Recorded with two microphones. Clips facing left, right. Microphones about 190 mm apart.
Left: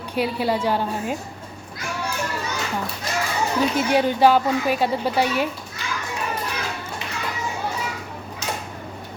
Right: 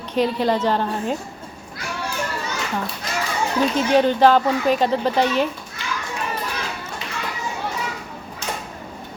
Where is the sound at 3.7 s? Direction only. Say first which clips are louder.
Right 3 dB; 10° left (ahead or behind).